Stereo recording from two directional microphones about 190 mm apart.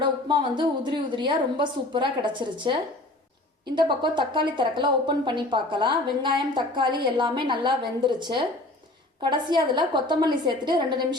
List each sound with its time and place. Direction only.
0.0 s speech: 25° right (ahead or behind)
3.8 s speech: 25° right (ahead or behind)